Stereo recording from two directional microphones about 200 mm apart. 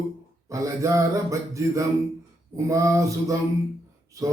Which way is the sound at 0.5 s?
15° right (ahead or behind).